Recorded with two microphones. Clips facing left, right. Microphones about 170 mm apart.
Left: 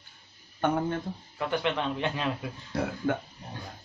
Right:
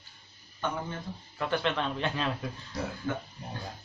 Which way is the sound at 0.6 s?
55° left (ahead or behind).